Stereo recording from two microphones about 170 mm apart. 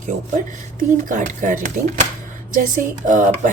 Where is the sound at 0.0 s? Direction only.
50° right (ahead or behind).